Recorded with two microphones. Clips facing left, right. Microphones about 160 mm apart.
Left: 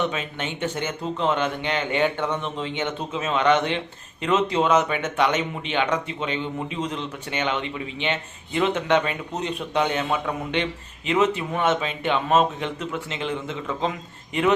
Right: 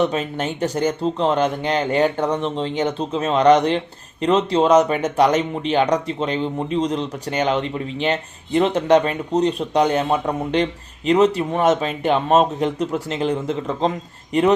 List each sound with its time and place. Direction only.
0.0 s speech: 40° right (ahead or behind)